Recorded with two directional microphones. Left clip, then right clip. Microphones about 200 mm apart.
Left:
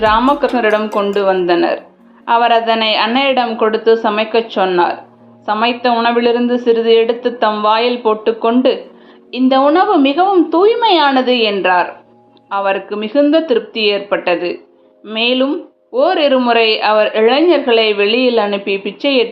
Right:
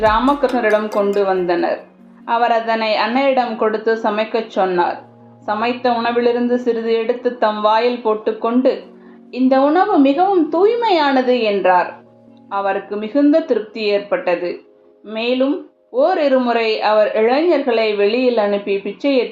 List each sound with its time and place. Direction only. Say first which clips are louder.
0.0 s a woman's voice: left 3 dB; 20° left (ahead or behind)